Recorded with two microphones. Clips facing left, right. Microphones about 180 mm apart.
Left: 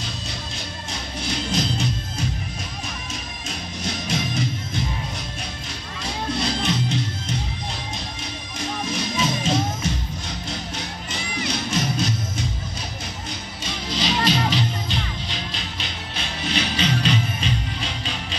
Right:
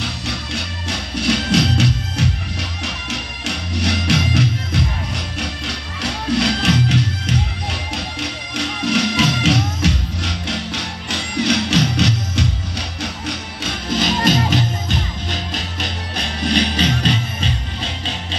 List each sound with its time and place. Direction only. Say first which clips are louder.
0.0 s music: right 6 dB; 70° right (ahead or behind)
13.8 s music: right 5 dB; 50° right (ahead or behind); by 17.1 s 35° right (ahead or behind)